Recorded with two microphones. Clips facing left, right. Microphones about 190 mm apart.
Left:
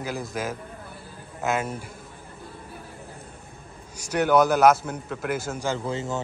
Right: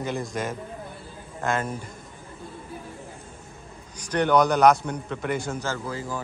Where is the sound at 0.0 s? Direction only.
Centre (ahead or behind).